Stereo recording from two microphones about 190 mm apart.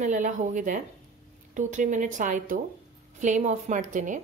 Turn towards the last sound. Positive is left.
turn(degrees=-40)  # may be behind; listen again after turning